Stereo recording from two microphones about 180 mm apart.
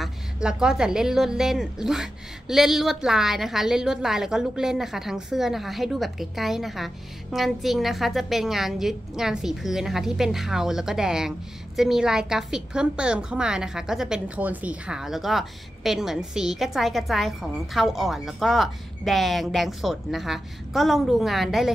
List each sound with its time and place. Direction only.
0.0 s a woman's voice: 5° right (ahead or behind)